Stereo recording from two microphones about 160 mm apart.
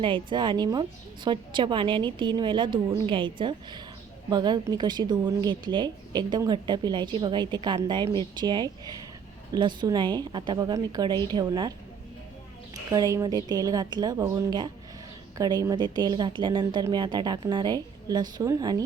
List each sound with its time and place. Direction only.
0.0 s a woman's voice: 30° right (ahead or behind)
12.9 s a woman's voice: 20° right (ahead or behind)